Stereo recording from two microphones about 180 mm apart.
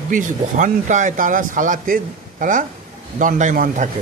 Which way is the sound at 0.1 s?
45° right (ahead or behind).